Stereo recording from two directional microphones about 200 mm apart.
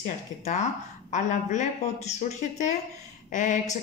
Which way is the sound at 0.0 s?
35° left (ahead or behind).